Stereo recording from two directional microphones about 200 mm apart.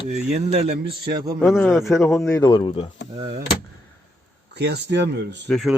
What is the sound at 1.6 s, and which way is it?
Speech, 10° left (ahead or behind).